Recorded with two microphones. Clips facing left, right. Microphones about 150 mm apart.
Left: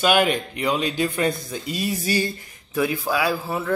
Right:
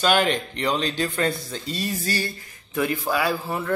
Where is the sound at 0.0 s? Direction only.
10° left (ahead or behind).